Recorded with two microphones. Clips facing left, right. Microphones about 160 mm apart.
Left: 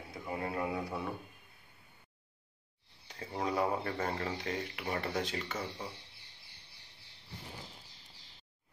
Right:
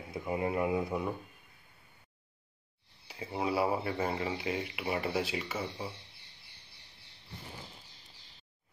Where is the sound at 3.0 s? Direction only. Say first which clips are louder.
Right 2 dB; 10° right (ahead or behind).